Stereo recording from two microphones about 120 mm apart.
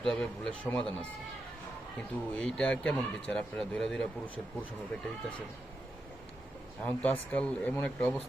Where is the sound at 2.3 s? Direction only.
5° left (ahead or behind).